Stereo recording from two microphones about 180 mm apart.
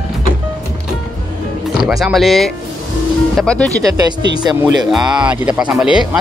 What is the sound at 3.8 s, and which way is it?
Speech, 20° right (ahead or behind).